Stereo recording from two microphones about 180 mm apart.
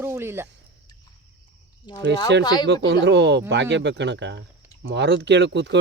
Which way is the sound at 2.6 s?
70° right (ahead or behind).